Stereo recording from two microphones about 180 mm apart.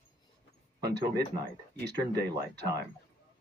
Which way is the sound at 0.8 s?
65° right (ahead or behind).